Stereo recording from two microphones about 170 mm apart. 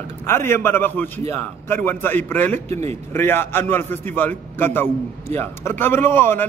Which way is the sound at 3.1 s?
15° left (ahead or behind).